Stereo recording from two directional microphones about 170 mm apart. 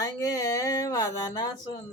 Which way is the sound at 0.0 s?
20° left (ahead or behind).